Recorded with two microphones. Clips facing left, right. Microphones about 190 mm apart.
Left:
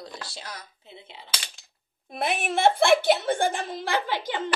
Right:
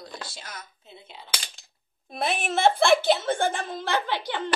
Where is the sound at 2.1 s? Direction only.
15° left (ahead or behind).